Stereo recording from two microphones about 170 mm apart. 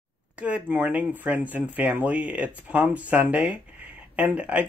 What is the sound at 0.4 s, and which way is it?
Speech, 10° right (ahead or behind).